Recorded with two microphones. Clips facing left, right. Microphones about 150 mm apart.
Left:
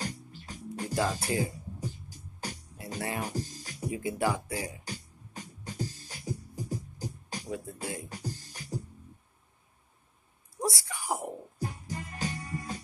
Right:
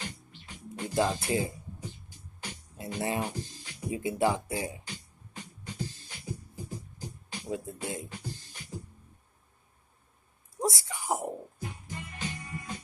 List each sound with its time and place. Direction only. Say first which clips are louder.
0.0 s music: left 5 dB; 40° left (ahead or behind)
0.8 s speech: right 2 dB; 20° right (ahead or behind)
1.8 s music: left 4 dB; 40° left (ahead or behind)
3.0 s speech: right 3 dB; 20° right (ahead or behind)
3.3 s music: left 4 dB; 40° left (ahead or behind)
3.9 s speech: right 3 dB; 20° right (ahead or behind)
4.8 s music: left 3 dB; 40° left (ahead or behind)
7.4 s speech: right 3 dB; 20° right (ahead or behind)
8.1 s music: left 2 dB; 40° left (ahead or behind)
10.6 s a sound: right 1 dB; 20° right (ahead or behind)
11.6 s music: left 4 dB; 40° left (ahead or behind)